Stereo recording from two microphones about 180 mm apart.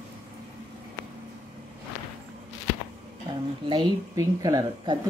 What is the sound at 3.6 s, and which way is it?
A woman's voice, 20° right (ahead or behind).